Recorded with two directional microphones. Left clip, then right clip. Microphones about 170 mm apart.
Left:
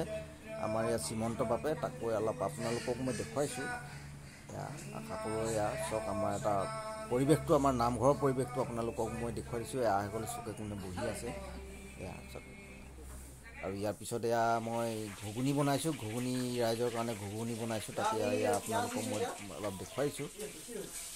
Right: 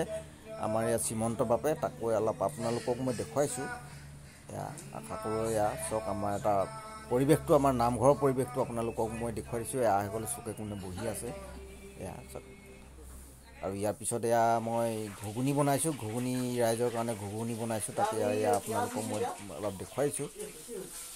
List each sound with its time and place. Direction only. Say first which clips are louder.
0.6 s speech: right 3 dB; 25° right (ahead or behind)
5.4 s speech: right 4 dB; 20° right (ahead or behind)
13.7 s speech: right 4 dB; 25° right (ahead or behind)